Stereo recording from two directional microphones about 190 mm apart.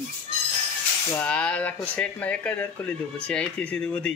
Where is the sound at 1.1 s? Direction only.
5° left (ahead or behind).